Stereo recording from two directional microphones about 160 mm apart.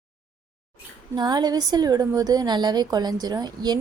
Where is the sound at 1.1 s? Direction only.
25° right (ahead or behind).